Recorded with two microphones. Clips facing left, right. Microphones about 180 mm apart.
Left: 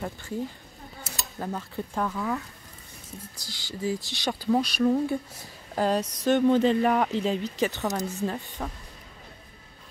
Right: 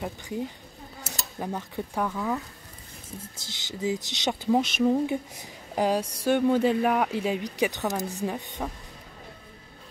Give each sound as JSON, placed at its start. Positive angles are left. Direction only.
{"t": 0.0, "sound": "speech", "side_deg": -15}
{"t": 1.4, "sound": "speech", "side_deg": -15}
{"t": 3.4, "sound": "speech", "side_deg": -20}